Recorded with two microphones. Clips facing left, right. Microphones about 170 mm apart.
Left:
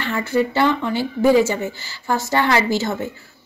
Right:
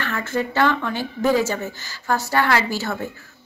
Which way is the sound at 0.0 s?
15° left (ahead or behind).